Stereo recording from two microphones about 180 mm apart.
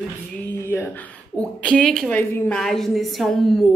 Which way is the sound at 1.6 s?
5° left (ahead or behind).